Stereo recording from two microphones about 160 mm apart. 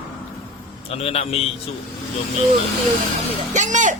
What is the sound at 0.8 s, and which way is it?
Speech, 40° left (ahead or behind).